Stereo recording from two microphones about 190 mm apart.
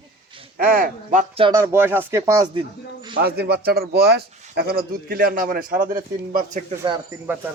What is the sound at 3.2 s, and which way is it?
A man's voice, 55° right (ahead or behind).